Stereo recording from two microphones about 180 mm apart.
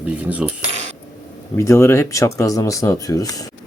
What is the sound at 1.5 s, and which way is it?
Speech, 15° left (ahead or behind).